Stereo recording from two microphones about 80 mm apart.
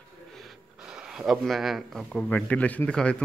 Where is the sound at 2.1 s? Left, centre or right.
Centre.